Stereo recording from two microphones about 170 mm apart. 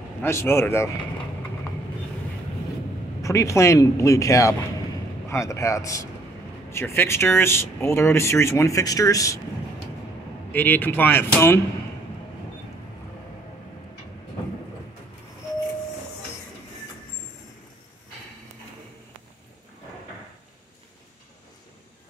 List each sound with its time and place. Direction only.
0.2 s speech: 15° left (ahead or behind)
3.2 s a man's voice: 20° left (ahead or behind)
10.5 s speech: 10° left (ahead or behind)